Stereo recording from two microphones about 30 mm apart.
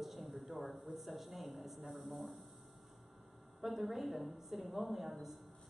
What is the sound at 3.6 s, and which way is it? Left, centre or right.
A woman's voice, centre.